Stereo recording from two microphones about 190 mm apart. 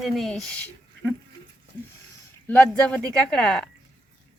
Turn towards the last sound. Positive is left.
turn(degrees=5)  # may be behind; listen again after turning